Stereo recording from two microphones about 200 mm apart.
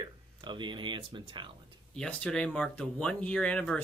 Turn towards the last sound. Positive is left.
turn(degrees=5)  # may be behind; listen again after turning